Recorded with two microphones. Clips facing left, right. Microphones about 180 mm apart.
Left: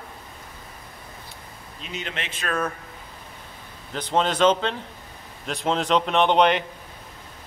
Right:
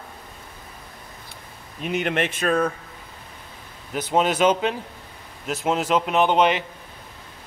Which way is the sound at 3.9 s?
10° right (ahead or behind).